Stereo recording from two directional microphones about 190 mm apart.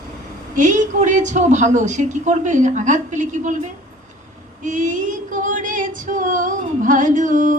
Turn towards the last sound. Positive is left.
turn(degrees=-45)  # may be behind; listen again after turning